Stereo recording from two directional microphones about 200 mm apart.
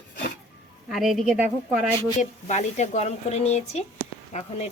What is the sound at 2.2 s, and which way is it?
Speech, 35° left (ahead or behind).